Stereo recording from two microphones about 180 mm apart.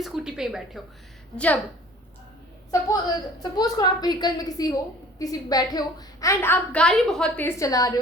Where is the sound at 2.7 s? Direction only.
20° left (ahead or behind).